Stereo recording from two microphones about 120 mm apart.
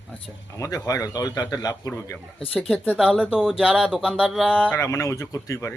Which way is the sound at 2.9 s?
10° right (ahead or behind).